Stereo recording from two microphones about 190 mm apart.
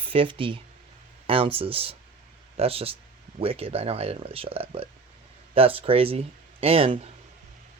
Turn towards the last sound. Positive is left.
turn(degrees=-30)  # may be behind; listen again after turning